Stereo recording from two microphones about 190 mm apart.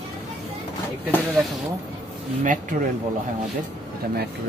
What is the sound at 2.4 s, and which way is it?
Speech, 40° right (ahead or behind).